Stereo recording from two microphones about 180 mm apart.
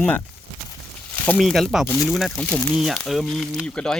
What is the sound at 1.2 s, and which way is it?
Speech, 5° left (ahead or behind).